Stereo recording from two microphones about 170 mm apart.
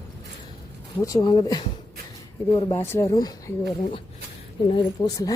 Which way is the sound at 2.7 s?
15° left (ahead or behind).